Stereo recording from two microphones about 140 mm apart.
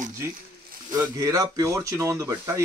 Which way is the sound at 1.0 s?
20° right (ahead or behind).